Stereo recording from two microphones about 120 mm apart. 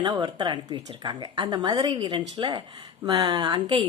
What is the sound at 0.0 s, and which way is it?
Speech, 40° right (ahead or behind).